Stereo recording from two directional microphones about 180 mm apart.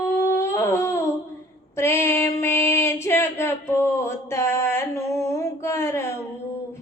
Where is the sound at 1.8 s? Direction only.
15° left (ahead or behind).